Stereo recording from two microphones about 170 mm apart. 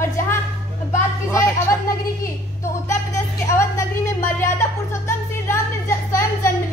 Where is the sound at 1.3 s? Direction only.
15° left (ahead or behind).